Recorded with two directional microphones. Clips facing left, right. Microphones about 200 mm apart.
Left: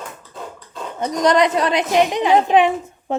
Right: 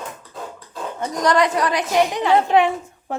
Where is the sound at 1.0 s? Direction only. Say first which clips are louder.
Left 3 dB; 20° left (ahead or behind).